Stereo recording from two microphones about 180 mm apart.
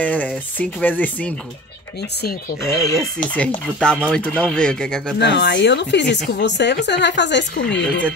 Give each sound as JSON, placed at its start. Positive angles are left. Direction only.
{"t": 0.0, "sound": "speech", "side_deg": 10}
{"t": 2.8, "sound": "speech", "side_deg": 0}
{"t": 5.2, "sound": "speech", "side_deg": 70}